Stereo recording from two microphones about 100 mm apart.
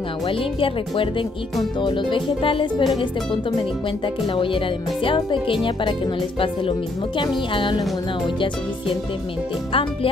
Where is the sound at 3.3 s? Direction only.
60° left (ahead or behind).